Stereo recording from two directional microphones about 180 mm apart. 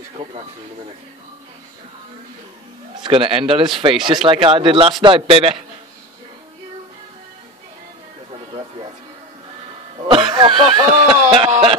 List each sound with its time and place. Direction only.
3.0 s speech: 30° right (ahead or behind)
3.9 s speech: centre (ahead or behind)
4.3 s speech: 30° right (ahead or behind)
10.0 s speech: 25° right (ahead or behind)